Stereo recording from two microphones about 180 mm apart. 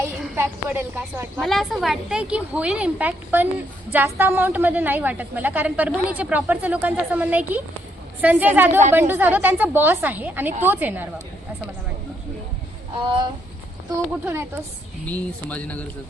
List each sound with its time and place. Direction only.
0.3 s a woman's voice: 15° right (ahead or behind)
1.4 s a woman's voice: centre (ahead or behind)
13.0 s speech: 25° right (ahead or behind)
15.0 s speech: 10° left (ahead or behind)